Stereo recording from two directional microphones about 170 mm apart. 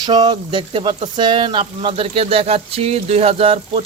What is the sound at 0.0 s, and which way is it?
Speech, 25° right (ahead or behind).